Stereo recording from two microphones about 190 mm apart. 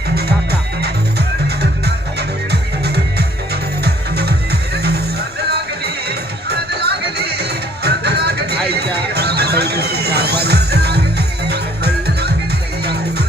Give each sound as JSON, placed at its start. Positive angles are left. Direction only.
{"t": 1.5, "sound": "music", "side_deg": -60}